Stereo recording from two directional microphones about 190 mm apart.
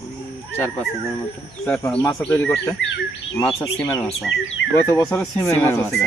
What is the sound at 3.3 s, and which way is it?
Speech, 20° left (ahead or behind).